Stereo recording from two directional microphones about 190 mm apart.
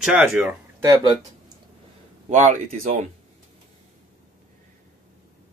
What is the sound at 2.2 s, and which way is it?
Speech, 40° right (ahead or behind).